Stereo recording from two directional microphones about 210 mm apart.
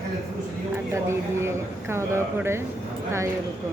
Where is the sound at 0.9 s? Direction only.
15° right (ahead or behind).